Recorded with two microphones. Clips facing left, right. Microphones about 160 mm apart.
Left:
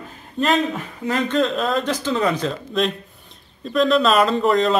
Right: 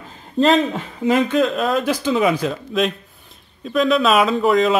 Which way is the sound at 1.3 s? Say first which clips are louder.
Right 2 dB; centre (ahead or behind).